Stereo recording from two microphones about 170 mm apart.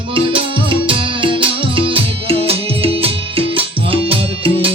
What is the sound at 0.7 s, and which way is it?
Music, 30° right (ahead or behind).